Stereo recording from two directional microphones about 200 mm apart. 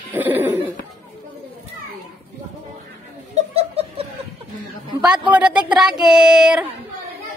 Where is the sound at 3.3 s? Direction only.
30° right (ahead or behind).